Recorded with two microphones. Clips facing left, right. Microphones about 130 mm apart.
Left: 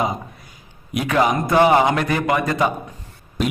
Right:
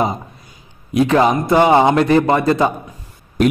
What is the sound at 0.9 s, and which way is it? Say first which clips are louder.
A man's voice: right 5 dB; 30° right (ahead or behind).